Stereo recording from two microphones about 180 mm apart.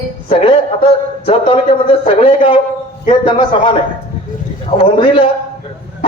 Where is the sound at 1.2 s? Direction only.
30° left (ahead or behind).